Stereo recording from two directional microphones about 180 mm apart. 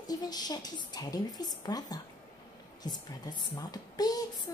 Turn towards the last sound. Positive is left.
turn(degrees=20)  # may be behind; listen again after turning